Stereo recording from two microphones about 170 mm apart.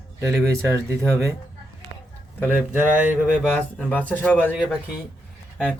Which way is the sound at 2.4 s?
10° right (ahead or behind).